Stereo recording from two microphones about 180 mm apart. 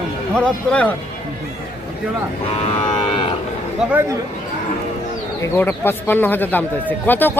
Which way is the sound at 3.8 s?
5° right (ahead or behind).